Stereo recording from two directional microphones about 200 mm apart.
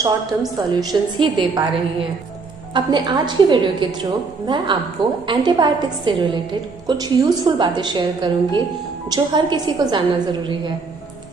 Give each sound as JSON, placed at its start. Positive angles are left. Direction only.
{"t": 0.0, "sound": "a woman's voice", "side_deg": -20}